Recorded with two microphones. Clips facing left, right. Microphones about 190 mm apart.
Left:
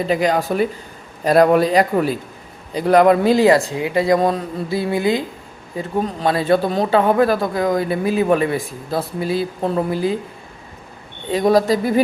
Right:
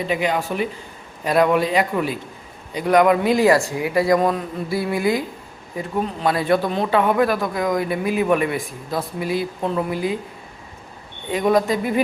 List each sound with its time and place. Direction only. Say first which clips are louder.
0.0 s speech: left 4 dB; 40° left (ahead or behind)
5.7 s speech: left 2 dB; 35° left (ahead or behind)
11.3 s speech: left 3 dB; 35° left (ahead or behind)